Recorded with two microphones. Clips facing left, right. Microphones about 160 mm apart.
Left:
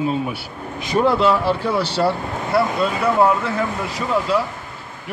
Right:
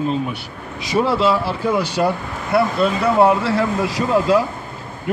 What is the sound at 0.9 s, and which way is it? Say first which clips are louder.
Speech: even; 5° right (ahead or behind).